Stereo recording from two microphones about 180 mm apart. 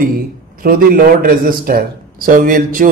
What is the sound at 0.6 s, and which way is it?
A man's voice, 50° right (ahead or behind).